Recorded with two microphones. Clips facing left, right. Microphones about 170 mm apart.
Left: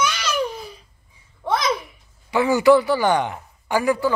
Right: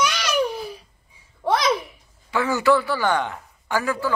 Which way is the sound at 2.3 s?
15° left (ahead or behind).